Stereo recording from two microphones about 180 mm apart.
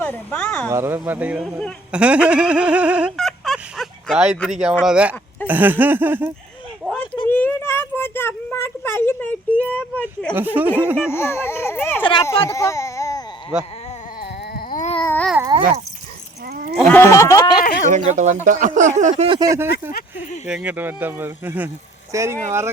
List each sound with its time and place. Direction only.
0.0 s speech: 10° left (ahead or behind)
0.7 s speech: 15° right (ahead or behind)
6.8 s a sound: 5° left (ahead or behind)
10.3 s speech: 10° right (ahead or behind)
11.1 s speech: 15° left (ahead or behind)
14.2 s a sound: 55° left (ahead or behind)
15.0 s babbling: 10° left (ahead or behind)
16.5 s livestock: 60° right (ahead or behind)
16.7 s speech: 10° left (ahead or behind)
17.8 s speech: 40° right (ahead or behind)
19.1 s speech: 25° right (ahead or behind)